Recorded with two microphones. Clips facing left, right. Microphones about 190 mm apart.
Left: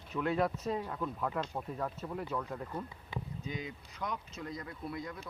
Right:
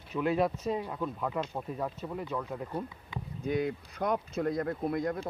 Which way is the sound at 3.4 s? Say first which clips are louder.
Right 11 dB; 65° right (ahead or behind).